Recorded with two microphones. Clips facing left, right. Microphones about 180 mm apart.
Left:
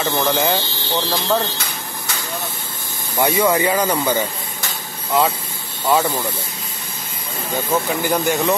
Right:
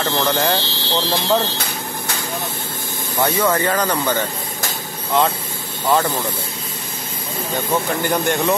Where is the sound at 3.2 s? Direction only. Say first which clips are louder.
Left 2 dB; 10° left (ahead or behind).